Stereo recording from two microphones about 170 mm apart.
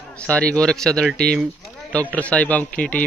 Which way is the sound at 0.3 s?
5° left (ahead or behind).